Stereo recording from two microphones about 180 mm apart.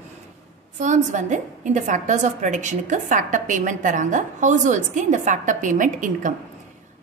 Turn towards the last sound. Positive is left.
turn(degrees=-45)  # may be behind; listen again after turning